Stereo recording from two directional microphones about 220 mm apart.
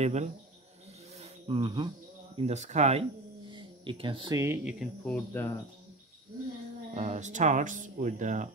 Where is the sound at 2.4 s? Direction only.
30° right (ahead or behind); by 5.5 s 10° left (ahead or behind).